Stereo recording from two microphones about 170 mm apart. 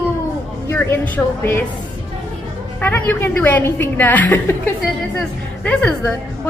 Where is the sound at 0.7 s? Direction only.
15° left (ahead or behind).